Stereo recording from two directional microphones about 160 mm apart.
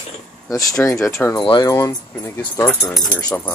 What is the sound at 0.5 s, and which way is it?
Speech, 20° left (ahead or behind).